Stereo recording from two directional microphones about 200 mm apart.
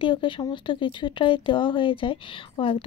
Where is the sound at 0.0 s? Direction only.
25° left (ahead or behind).